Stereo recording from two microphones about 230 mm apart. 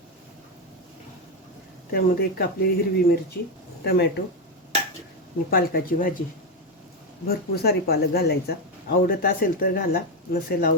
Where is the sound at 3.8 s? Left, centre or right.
Left.